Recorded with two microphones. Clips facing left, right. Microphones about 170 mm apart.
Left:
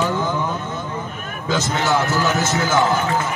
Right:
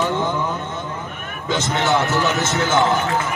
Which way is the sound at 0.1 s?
25° right (ahead or behind).